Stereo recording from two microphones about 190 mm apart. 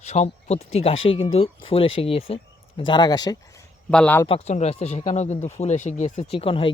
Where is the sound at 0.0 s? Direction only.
35° left (ahead or behind); by 3.3 s 20° left (ahead or behind).